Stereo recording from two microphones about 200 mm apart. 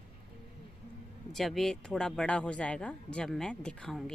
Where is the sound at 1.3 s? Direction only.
Centre (ahead or behind).